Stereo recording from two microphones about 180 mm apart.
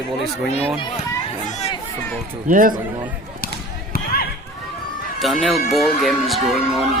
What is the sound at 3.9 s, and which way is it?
Basketball bounce, 55° left (ahead or behind).